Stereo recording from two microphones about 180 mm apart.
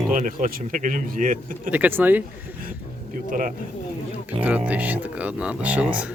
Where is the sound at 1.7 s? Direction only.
10° right (ahead or behind).